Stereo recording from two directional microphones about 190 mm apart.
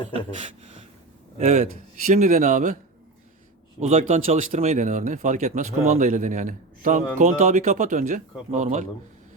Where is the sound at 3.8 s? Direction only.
35° right (ahead or behind).